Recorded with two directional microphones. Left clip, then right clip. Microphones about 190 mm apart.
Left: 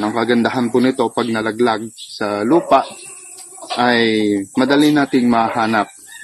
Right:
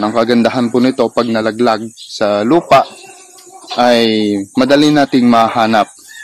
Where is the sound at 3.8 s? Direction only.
50° right (ahead or behind).